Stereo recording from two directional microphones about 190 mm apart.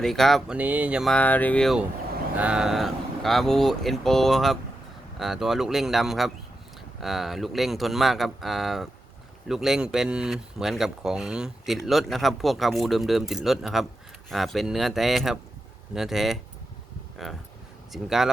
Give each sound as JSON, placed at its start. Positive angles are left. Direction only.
{"t": 0.0, "sound": "speech", "side_deg": 0}